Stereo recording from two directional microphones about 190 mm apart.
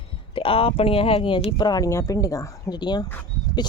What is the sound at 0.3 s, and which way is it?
Speech, 30° left (ahead or behind).